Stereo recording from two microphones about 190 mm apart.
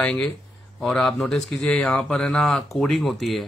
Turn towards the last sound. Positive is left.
turn(degrees=0)  # may be behind; listen again after turning